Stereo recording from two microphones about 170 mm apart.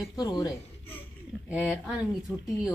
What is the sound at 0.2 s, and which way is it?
Speech, 25° left (ahead or behind).